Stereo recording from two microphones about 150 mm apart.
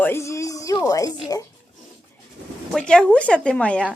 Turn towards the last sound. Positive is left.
turn(degrees=5)  # may be behind; listen again after turning